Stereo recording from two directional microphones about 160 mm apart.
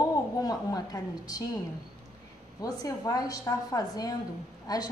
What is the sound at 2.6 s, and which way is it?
A woman's voice, 25° left (ahead or behind).